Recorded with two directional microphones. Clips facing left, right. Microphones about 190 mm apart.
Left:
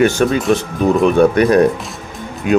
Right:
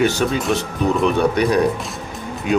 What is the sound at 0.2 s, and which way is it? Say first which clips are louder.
Speech: left 5 dB; 55° left (ahead or behind).